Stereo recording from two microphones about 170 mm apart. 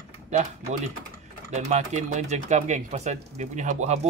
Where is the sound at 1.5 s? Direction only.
45° right (ahead or behind).